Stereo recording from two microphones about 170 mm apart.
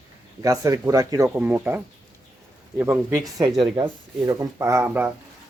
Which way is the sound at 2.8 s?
15° right (ahead or behind).